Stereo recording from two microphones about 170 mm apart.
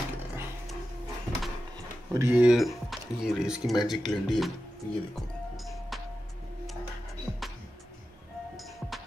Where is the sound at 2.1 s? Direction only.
10° right (ahead or behind).